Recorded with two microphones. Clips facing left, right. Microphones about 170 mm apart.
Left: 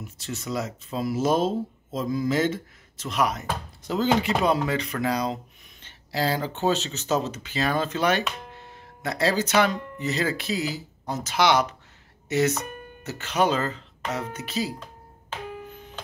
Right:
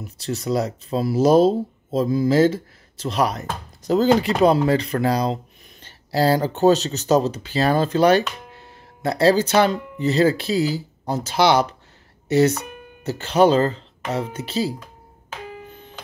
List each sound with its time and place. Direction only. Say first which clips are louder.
0.0 s speech: right 7 dB; 35° right (ahead or behind)